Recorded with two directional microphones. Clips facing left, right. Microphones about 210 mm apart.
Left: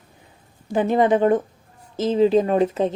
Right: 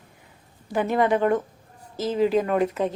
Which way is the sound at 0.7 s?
25° left (ahead or behind).